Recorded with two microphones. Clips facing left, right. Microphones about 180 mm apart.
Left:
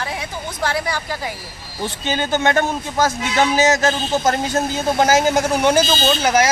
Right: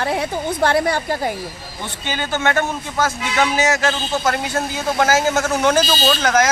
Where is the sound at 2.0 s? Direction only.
20° left (ahead or behind).